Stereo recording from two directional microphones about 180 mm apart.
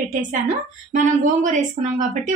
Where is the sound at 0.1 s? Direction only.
45° right (ahead or behind).